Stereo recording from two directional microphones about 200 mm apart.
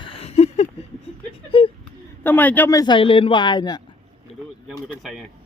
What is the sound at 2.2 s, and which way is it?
A man's voice, 10° left (ahead or behind).